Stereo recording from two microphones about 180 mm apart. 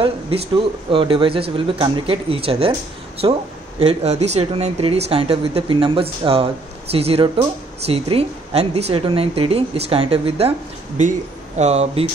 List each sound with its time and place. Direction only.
0.0 s speech: 30° right (ahead or behind)
3.8 s speech: 35° right (ahead or behind)